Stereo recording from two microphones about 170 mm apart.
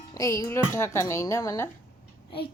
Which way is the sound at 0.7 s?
15° left (ahead or behind).